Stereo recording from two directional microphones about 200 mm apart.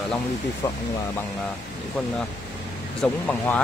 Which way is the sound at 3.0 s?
5° left (ahead or behind).